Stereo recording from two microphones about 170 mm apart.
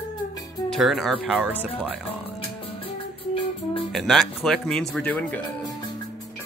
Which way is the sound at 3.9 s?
Centre (ahead or behind).